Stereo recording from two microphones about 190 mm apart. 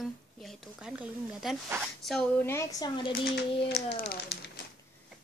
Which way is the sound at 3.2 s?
65° left (ahead or behind).